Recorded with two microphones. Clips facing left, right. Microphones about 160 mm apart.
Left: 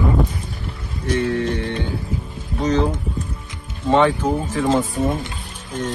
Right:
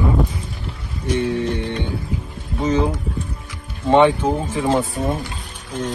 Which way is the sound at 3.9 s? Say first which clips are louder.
Right 2 dB; 15° right (ahead or behind).